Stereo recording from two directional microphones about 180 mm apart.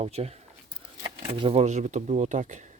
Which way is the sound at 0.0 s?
35° right (ahead or behind).